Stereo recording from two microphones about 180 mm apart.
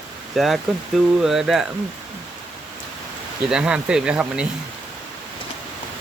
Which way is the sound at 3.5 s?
5° right (ahead or behind).